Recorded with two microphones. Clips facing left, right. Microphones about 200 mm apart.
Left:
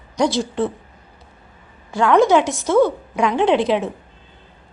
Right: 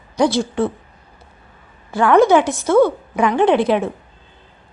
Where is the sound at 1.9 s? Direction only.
5° right (ahead or behind).